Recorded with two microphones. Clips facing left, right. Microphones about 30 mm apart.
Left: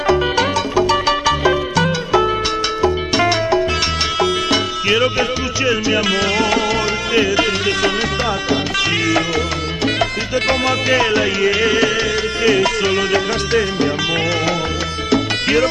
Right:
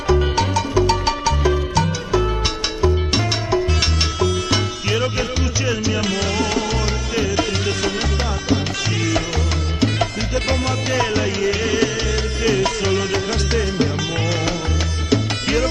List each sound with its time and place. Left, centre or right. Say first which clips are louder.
0.1 s salsa music: left 2 dB; left
4.2 s music: left 3 dB; left
10.3 s music: left 5 dB; left